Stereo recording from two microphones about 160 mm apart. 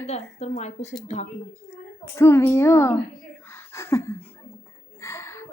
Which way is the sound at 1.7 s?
15° left (ahead or behind).